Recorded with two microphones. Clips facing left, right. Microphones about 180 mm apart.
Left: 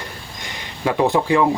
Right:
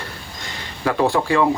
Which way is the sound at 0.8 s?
20° left (ahead or behind).